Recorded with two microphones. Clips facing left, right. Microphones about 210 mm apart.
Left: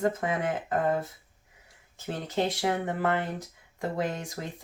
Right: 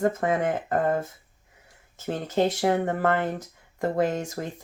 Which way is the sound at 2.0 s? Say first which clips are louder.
Right 5 dB; 45° right (ahead or behind).